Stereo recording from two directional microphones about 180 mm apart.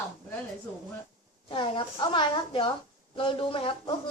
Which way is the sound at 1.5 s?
25° left (ahead or behind).